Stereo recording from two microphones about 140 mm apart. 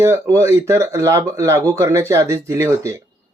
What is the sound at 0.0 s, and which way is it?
Speech, 20° right (ahead or behind).